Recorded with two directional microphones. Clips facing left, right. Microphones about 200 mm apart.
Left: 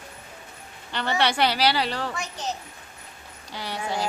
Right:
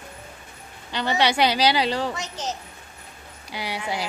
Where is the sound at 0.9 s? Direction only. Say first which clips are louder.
Right 2 dB; 15° right (ahead or behind).